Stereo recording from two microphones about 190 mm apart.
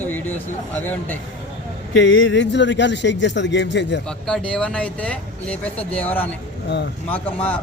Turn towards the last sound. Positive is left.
turn(degrees=5)  # may be behind; listen again after turning